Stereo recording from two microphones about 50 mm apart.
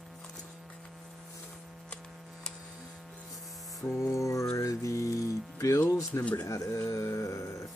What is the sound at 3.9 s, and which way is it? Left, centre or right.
Music, left.